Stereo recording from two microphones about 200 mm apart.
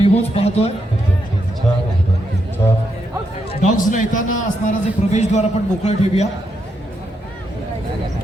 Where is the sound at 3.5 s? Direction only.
40° left (ahead or behind).